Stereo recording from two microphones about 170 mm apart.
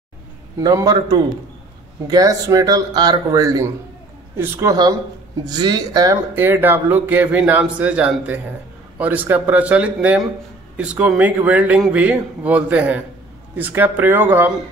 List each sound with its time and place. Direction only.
0.6 s a man's voice: 20° right (ahead or behind)
6.3 s a man's voice: 10° right (ahead or behind)